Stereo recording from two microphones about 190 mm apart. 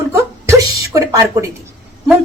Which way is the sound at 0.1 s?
15° right (ahead or behind).